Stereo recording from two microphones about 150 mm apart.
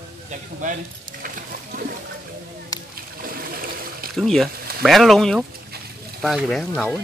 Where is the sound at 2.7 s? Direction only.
25° left (ahead or behind).